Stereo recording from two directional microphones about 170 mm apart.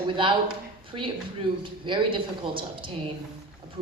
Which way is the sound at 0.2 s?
30° right (ahead or behind).